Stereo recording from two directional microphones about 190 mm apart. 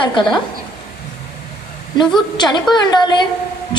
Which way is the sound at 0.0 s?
25° left (ahead or behind).